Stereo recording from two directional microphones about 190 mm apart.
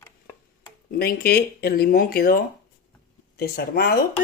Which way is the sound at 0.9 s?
50° left (ahead or behind).